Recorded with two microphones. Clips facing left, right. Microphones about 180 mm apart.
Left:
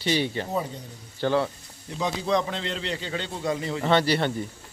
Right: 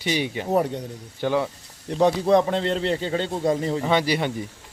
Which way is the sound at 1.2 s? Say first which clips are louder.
Right 1 dB; 15° right (ahead or behind).